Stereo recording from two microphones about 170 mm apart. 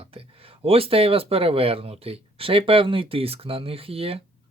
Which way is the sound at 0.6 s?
35° right (ahead or behind).